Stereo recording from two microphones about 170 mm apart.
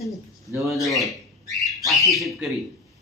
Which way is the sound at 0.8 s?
Centre (ahead or behind).